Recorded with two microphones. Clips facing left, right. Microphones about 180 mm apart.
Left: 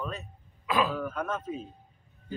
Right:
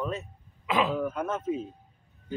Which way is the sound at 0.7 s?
20° right (ahead or behind).